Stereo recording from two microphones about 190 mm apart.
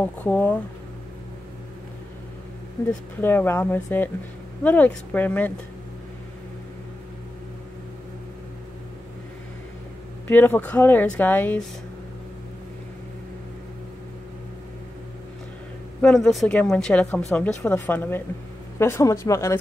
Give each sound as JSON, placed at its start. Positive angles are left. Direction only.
{"t": 0.0, "sound": "speech", "side_deg": 10}
{"t": 2.8, "sound": "speech", "side_deg": 15}
{"t": 10.2, "sound": "speech", "side_deg": 10}
{"t": 16.3, "sound": "speech", "side_deg": 5}